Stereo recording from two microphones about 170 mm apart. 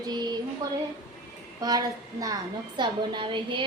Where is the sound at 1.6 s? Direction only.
20° right (ahead or behind).